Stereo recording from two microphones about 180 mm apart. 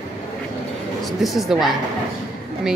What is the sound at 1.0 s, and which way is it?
Speech, centre (ahead or behind).